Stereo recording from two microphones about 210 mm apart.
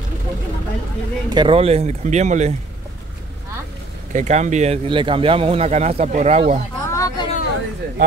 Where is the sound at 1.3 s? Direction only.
25° right (ahead or behind).